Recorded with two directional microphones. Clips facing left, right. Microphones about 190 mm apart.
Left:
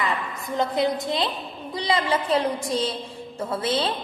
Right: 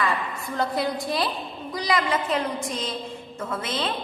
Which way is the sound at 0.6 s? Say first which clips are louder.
Left 3 dB; 20° left (ahead or behind).